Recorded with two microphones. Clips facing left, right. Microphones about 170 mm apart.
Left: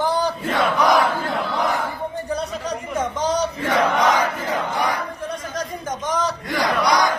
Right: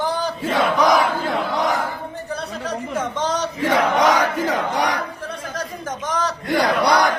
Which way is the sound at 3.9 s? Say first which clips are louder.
Right 2 dB; 90° right.